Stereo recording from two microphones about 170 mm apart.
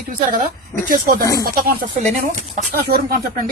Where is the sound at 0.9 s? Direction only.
55° right (ahead or behind).